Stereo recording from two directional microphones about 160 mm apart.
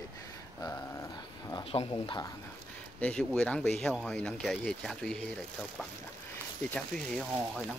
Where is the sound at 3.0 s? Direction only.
5° left (ahead or behind).